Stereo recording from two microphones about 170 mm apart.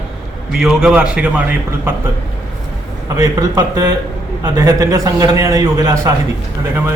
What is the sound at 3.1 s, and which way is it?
A man's voice, 20° right (ahead or behind).